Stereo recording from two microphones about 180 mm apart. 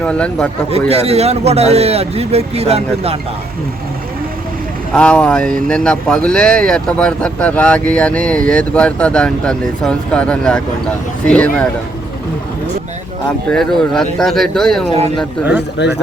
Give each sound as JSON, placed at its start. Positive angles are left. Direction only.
{"t": 0.0, "sound": "a man's voice", "side_deg": 5}
{"t": 0.7, "sound": "a man's voice", "side_deg": -35}
{"t": 4.9, "sound": "speech", "side_deg": 5}
{"t": 13.5, "sound": "speech", "side_deg": 0}
{"t": 15.8, "sound": "a man's voice", "side_deg": 75}